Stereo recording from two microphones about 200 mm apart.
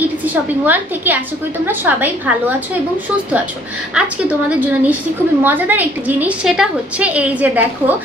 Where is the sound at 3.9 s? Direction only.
10° right (ahead or behind).